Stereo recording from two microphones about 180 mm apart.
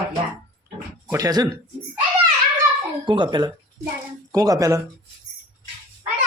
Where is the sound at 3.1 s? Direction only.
25° right (ahead or behind).